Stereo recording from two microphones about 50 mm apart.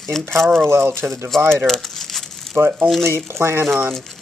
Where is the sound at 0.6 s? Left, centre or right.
Right.